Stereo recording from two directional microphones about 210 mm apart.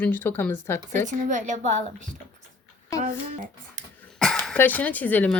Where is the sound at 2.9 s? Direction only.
15° left (ahead or behind).